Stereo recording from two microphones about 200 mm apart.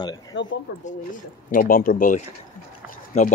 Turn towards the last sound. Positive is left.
turn(degrees=40)  # may be behind; listen again after turning